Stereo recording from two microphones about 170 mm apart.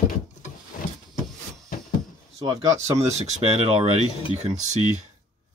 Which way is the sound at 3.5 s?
35° right (ahead or behind).